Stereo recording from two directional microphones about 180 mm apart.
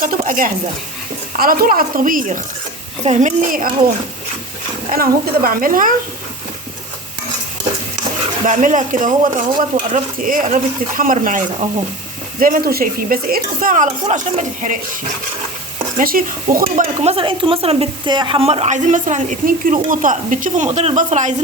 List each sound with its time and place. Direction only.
0.3 s speech: 45° right (ahead or behind)
4.9 s speech: 55° right (ahead or behind)
8.4 s speech: 45° right (ahead or behind)
16.0 s speech: 50° right (ahead or behind)